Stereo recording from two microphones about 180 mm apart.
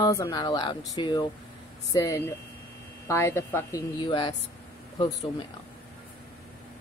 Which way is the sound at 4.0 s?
25° left (ahead or behind).